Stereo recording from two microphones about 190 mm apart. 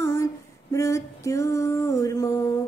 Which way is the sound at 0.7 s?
15° left (ahead or behind).